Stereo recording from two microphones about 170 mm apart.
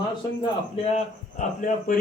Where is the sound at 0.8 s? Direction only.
45° left (ahead or behind).